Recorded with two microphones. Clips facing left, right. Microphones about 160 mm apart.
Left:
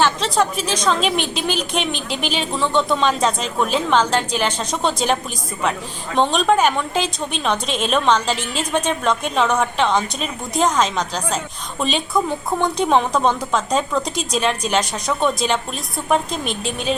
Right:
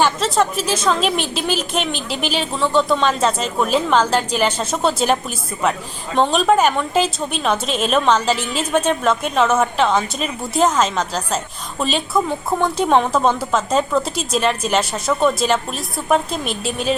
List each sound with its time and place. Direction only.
0.0 s a woman's voice: 5° right (ahead or behind)
6.1 s a woman's voice: centre (ahead or behind)